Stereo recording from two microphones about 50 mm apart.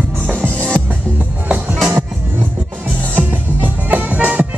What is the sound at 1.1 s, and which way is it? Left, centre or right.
Music, right.